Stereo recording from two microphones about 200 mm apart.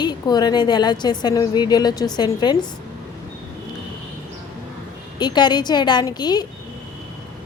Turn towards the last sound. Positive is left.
turn(degrees=20)  # may be behind; listen again after turning